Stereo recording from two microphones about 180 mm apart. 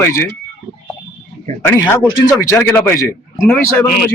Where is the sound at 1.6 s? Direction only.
10° left (ahead or behind).